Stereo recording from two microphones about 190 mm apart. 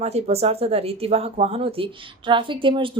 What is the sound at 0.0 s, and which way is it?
Speech, 35° right (ahead or behind).